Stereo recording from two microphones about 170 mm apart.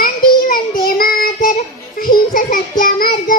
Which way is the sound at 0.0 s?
55° left (ahead or behind).